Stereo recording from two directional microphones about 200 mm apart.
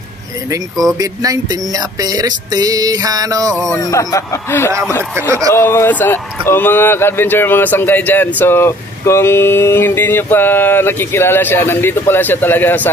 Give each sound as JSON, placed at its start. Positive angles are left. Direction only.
{"t": 0.9, "sound": "music", "side_deg": -15}
{"t": 3.5, "sound": "speech", "side_deg": 0}
{"t": 3.8, "sound": "a sound", "side_deg": 15}